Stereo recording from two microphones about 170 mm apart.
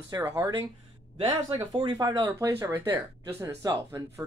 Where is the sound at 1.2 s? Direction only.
25° right (ahead or behind).